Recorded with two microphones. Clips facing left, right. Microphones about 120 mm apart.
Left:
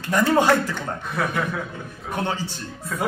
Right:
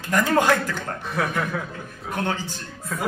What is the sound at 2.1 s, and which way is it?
Speech, 15° left (ahead or behind).